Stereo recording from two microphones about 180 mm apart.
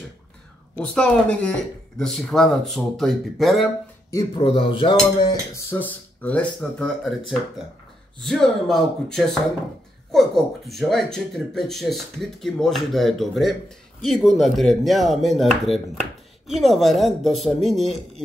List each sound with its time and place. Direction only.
0.7 s speech: 5° left (ahead or behind)
4.1 s speech: 20° left (ahead or behind)
4.4 s speech: 30° left (ahead or behind)
5.7 s speech: 10° left (ahead or behind)